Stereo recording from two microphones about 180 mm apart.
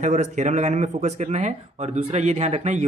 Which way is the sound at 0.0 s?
40° right (ahead or behind).